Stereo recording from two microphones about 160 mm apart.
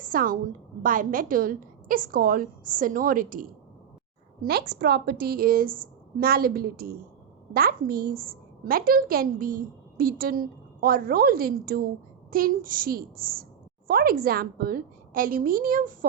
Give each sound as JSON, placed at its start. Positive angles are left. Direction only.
{"t": 0.0, "sound": "a woman's voice", "side_deg": -60}
{"t": 4.4, "sound": "a woman's voice", "side_deg": -85}